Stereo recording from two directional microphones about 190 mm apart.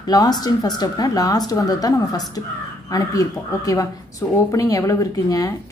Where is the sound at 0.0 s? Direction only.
20° left (ahead or behind).